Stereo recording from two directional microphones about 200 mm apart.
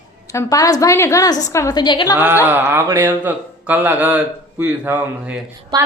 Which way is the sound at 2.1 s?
10° right (ahead or behind).